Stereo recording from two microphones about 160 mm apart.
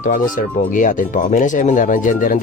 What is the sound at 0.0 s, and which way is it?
Speech, 55° left (ahead or behind).